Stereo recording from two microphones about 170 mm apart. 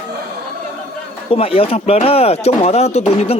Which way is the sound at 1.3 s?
35° left (ahead or behind).